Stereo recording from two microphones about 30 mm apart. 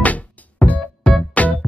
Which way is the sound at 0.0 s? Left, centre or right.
Left.